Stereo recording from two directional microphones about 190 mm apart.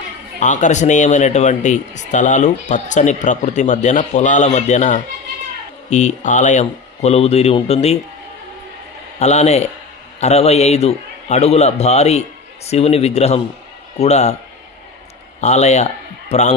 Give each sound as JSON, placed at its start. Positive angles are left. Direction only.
{"t": 0.4, "sound": "speech", "side_deg": 40}
{"t": 9.2, "sound": "speech", "side_deg": 35}
{"t": 15.4, "sound": "a man's voice", "side_deg": 35}